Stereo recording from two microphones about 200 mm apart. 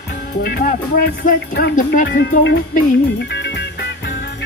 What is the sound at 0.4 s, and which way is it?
Music, 50° left (ahead or behind).